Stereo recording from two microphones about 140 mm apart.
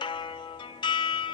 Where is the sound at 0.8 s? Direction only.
35° left (ahead or behind).